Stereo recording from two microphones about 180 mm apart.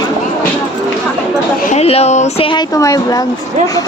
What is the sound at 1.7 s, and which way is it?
Speech, 35° left (ahead or behind).